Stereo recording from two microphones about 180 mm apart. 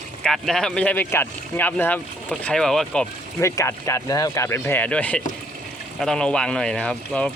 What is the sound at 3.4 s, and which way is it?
Speech, 15° left (ahead or behind).